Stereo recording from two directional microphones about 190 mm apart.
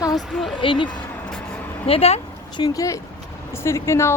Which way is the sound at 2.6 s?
15° left (ahead or behind).